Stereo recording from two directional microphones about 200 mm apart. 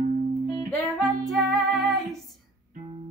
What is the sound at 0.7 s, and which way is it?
Speech, 5° left (ahead or behind).